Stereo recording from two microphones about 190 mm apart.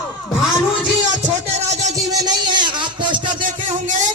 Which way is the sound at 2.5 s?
25° right (ahead or behind).